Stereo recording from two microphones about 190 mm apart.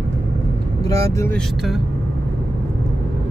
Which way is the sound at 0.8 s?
15° left (ahead or behind).